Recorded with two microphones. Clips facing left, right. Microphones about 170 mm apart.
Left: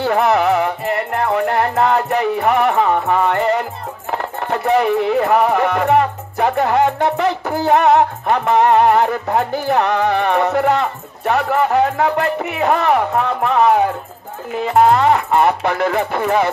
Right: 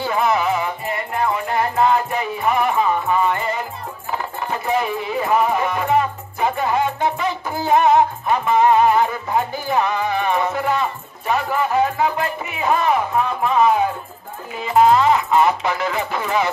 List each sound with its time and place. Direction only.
0.0 s music: 70° left (ahead or behind)
14.6 s speech: 60° left (ahead or behind)